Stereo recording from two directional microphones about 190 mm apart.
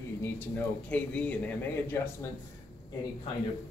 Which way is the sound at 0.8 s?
5° left (ahead or behind).